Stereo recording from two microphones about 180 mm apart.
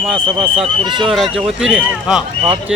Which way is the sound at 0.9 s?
25° right (ahead or behind).